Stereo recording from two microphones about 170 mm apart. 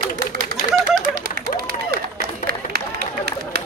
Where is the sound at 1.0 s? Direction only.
65° right (ahead or behind).